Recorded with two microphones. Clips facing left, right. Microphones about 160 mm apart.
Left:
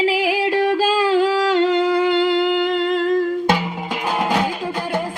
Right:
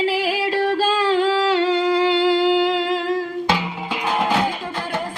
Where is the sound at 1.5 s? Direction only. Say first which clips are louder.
Left 2 dB; 50° left (ahead or behind).